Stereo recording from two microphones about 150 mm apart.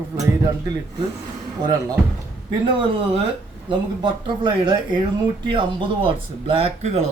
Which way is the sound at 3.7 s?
30° right (ahead or behind).